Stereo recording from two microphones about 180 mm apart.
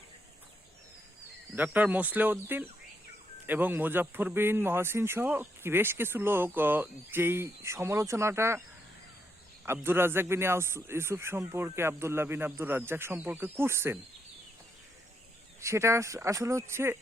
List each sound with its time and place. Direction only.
1.5 s speech: 10° right (ahead or behind)
9.6 s speech: 10° right (ahead or behind)
15.6 s speech: 15° right (ahead or behind)